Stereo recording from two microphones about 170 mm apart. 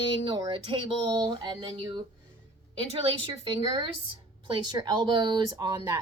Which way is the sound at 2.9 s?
30° right (ahead or behind).